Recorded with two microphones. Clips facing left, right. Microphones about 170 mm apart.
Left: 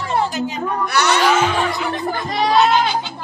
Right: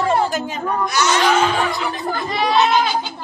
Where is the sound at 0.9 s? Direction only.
65° left (ahead or behind).